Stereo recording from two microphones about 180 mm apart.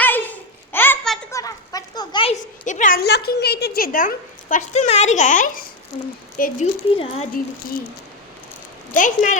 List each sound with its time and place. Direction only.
0.0 s babbling: 10° left (ahead or behind)
1.3 s a sound: 20° left (ahead or behind)
2.6 s a woman's voice: 45° left (ahead or behind)
6.9 s speech: 30° left (ahead or behind)
9.0 s speech: 45° left (ahead or behind)